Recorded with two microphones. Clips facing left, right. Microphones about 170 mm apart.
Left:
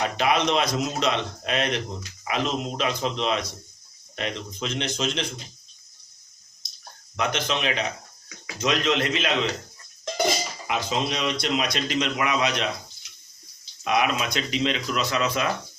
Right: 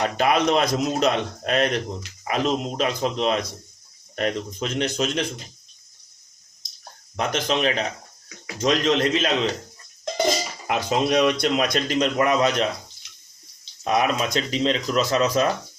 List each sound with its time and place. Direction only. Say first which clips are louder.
0.2 s a man's voice: right 3 dB; 45° right (ahead or behind)
7.2 s speech: right 3 dB; 40° right (ahead or behind)
10.7 s a man's voice: right 5 dB; 55° right (ahead or behind)
13.8 s speech: right 2 dB; 35° right (ahead or behind)